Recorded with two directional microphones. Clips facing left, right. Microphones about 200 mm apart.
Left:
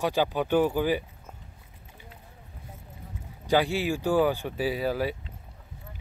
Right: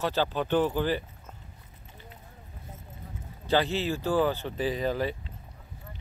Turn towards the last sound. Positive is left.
turn(degrees=10)  # may be behind; listen again after turning